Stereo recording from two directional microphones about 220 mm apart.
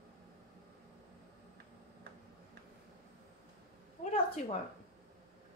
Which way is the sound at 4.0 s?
25° left (ahead or behind).